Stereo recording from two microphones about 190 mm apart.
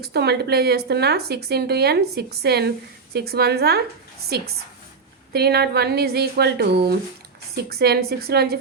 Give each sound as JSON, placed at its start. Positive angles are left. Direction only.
{"t": 0.0, "sound": "speech", "side_deg": -60}